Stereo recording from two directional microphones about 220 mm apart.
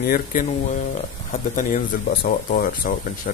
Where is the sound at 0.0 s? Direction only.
40° left (ahead or behind).